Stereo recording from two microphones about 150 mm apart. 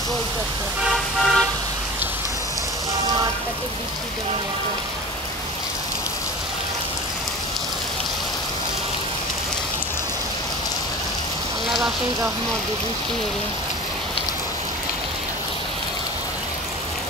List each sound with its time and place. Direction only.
1.2 s toot: centre (ahead or behind)